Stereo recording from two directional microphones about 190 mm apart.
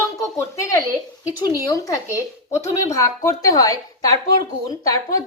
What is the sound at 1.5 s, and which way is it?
Speech, 15° left (ahead or behind).